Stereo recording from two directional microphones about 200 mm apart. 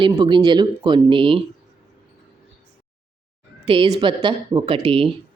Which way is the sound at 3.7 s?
25° right (ahead or behind).